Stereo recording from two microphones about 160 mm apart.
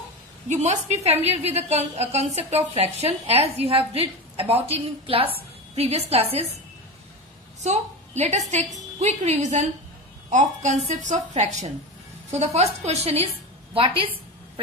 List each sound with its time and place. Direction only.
0.5 s a woman's voice: 45° right (ahead or behind)
7.6 s a woman's voice: 45° right (ahead or behind)